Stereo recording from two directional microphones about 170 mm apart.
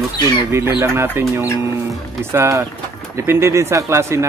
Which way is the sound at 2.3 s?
15° right (ahead or behind).